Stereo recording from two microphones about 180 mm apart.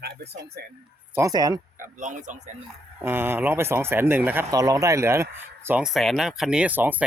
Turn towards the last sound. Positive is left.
turn(degrees=-10)  # may be behind; listen again after turning